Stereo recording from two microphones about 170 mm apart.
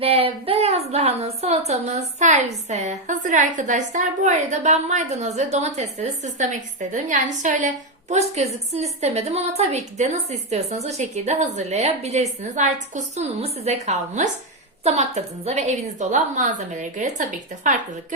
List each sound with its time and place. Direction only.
0.0 s a woman's voice: 35° right (ahead or behind)
8.7 s a woman's voice: 40° right (ahead or behind)